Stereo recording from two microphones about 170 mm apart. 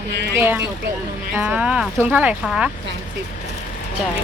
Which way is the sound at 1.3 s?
10° right (ahead or behind).